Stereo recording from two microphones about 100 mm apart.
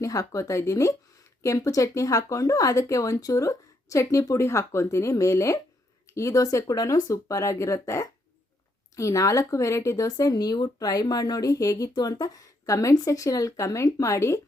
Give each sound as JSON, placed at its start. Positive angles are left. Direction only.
{"t": 0.0, "sound": "speech", "side_deg": 35}